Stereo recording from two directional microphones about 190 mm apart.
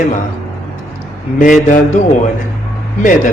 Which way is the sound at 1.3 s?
40° left (ahead or behind).